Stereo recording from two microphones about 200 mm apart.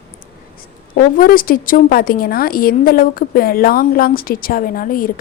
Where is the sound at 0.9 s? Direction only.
45° left (ahead or behind).